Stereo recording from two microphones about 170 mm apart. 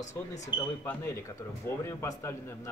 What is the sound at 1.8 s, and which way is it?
Speech, 15° left (ahead or behind).